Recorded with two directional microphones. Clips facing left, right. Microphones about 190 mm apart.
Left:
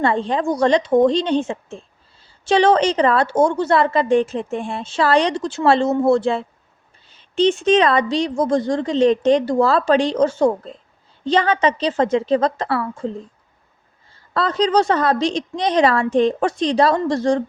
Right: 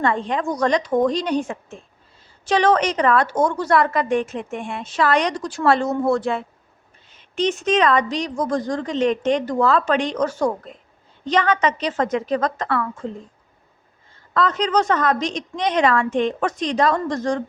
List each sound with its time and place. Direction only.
0.0 s a woman's voice: 30° left (ahead or behind)
14.3 s a woman's voice: 35° left (ahead or behind)